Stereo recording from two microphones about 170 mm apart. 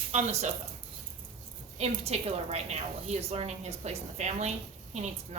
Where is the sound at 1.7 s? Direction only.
40° right (ahead or behind).